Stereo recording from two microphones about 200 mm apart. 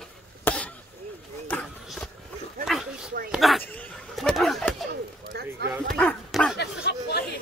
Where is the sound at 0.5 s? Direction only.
10° left (ahead or behind).